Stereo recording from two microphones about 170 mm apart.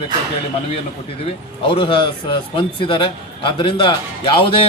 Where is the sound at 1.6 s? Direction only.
30° left (ahead or behind).